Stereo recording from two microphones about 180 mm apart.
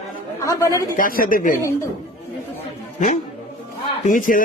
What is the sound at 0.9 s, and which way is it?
Speech, 50° left (ahead or behind).